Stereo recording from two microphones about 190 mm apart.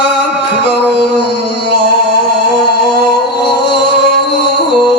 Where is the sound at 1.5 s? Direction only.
60° left (ahead or behind).